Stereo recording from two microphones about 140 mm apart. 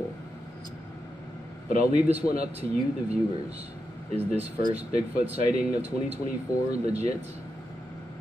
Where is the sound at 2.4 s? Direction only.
50° right (ahead or behind).